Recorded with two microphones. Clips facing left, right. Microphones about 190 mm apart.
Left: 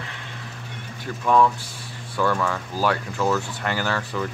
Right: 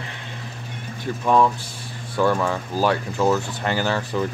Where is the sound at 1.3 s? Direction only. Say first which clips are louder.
Even; 20° right (ahead or behind).